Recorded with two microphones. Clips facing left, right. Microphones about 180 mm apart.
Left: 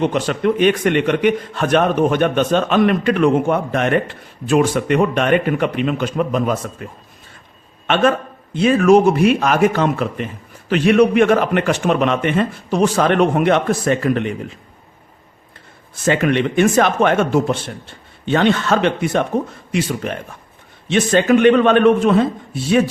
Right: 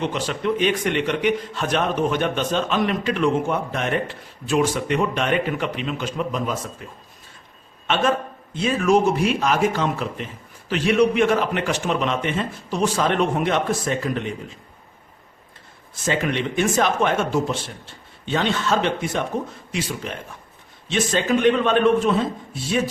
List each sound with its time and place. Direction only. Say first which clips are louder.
0.0 s a man's voice: left 7 dB; 55° left (ahead or behind)
16.0 s a man's voice: left 7 dB; 60° left (ahead or behind)